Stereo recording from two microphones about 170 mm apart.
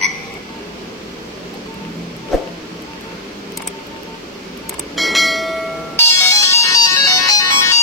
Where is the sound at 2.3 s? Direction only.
Centre (ahead or behind).